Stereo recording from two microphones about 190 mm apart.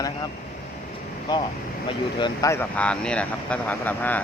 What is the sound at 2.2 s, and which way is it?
Speech, 15° left (ahead or behind).